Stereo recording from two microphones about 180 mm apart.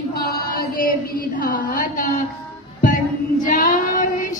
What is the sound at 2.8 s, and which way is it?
Child singing, 50° left (ahead or behind).